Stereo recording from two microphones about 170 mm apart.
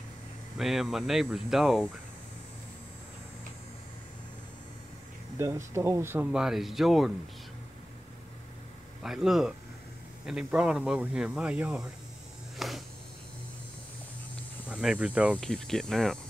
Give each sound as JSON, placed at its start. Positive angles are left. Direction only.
{"t": 0.6, "sound": "speech", "side_deg": 0}
{"t": 5.7, "sound": "speech", "side_deg": -15}
{"t": 9.0, "sound": "speech", "side_deg": 0}
{"t": 12.5, "sound": "a sound", "side_deg": 0}
{"t": 14.7, "sound": "speech", "side_deg": -5}
{"t": 15.3, "sound": "speech", "side_deg": 5}